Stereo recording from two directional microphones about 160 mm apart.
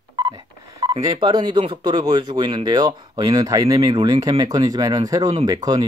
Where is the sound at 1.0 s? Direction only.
25° right (ahead or behind).